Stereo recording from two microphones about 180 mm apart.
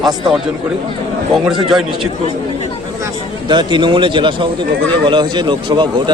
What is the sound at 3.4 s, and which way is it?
A man's voice, 25° right (ahead or behind).